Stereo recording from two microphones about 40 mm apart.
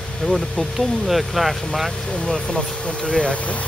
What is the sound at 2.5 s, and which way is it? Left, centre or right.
Speech, left.